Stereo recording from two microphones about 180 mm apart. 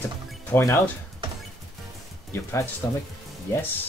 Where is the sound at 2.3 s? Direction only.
15° left (ahead or behind).